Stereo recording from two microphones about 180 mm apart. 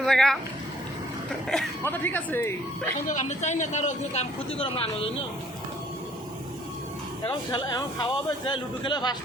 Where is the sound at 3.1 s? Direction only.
40° left (ahead or behind).